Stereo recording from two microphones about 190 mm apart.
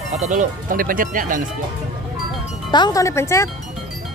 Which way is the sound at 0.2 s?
40° right (ahead or behind).